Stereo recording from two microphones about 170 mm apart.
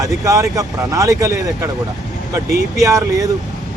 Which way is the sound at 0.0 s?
20° right (ahead or behind).